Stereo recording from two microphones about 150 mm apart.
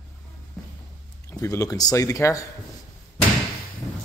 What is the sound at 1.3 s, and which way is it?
Speech, 20° left (ahead or behind).